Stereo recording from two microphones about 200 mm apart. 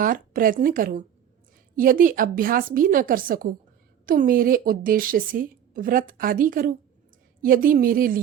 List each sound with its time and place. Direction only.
0.0 s a woman's voice: 45° right (ahead or behind)